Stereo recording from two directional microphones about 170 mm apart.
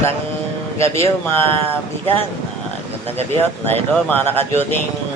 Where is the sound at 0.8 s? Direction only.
15° left (ahead or behind).